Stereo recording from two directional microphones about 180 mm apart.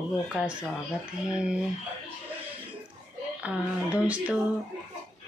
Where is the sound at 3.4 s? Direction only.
5° right (ahead or behind).